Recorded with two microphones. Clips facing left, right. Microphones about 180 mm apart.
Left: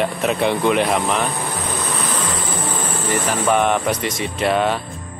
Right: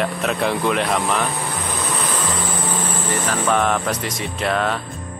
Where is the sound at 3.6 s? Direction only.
Centre (ahead or behind).